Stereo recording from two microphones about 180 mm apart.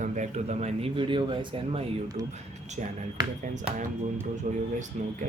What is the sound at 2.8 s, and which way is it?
Speech, 45° right (ahead or behind).